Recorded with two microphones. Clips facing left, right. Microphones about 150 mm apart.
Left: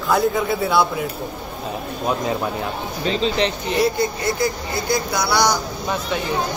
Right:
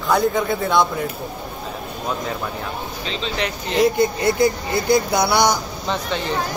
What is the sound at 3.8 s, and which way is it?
Speech, 20° right (ahead or behind).